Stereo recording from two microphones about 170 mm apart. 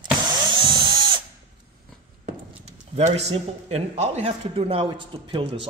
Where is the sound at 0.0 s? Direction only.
25° right (ahead or behind).